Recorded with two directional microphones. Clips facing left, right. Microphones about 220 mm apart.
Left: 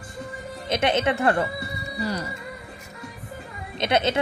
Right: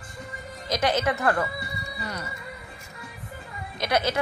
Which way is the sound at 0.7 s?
25° left (ahead or behind).